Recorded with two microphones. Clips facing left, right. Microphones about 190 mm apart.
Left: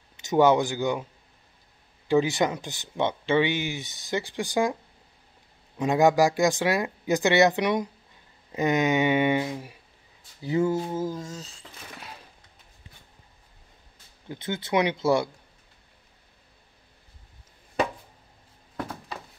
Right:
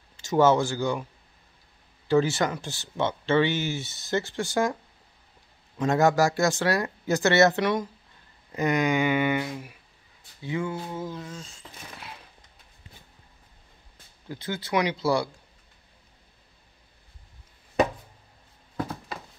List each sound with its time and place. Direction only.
0.2 s speech: 20° left (ahead or behind)
2.0 s speech: 15° left (ahead or behind)
5.8 s speech: 15° left (ahead or behind)
10.4 s a sound: 40° left (ahead or behind)
14.3 s speech: 25° left (ahead or behind)